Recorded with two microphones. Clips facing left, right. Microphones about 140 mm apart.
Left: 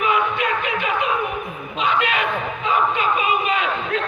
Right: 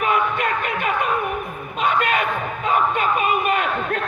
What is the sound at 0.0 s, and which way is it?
Music, 45° right (ahead or behind).